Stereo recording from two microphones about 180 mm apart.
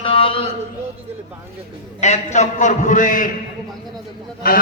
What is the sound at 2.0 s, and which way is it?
A man's voice, 40° left (ahead or behind).